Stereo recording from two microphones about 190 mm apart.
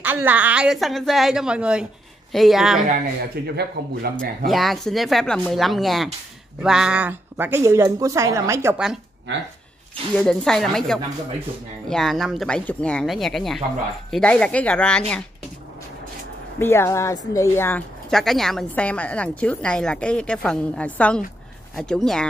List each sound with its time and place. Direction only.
0.0 s a woman's voice: 10° right (ahead or behind)
3.5 s a man's voice: 55° right (ahead or behind)
4.5 s a woman's voice: centre (ahead or behind); by 8.7 s 15° right (ahead or behind)
10.1 s a woman's voice: 5° left (ahead or behind)
16.5 s a woman's voice: 15° left (ahead or behind)